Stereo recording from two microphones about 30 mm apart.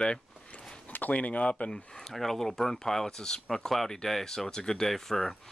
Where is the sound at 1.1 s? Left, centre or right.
Left.